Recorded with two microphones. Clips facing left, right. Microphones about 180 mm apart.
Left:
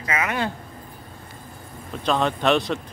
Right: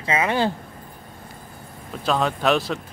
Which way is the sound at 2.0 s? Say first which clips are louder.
Even; 5° right (ahead or behind).